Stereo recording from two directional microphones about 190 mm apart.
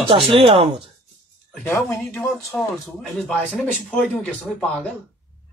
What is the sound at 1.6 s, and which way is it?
Speech, 10° left (ahead or behind).